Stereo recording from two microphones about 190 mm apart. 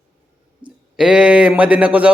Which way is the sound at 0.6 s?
25° right (ahead or behind).